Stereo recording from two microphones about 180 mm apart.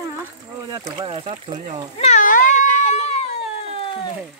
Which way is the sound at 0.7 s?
20° right (ahead or behind).